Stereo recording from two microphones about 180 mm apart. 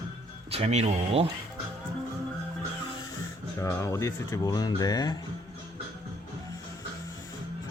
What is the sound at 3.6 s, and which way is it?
Speech, 15° left (ahead or behind).